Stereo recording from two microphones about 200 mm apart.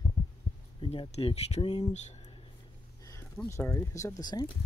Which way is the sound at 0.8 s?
25° left (ahead or behind).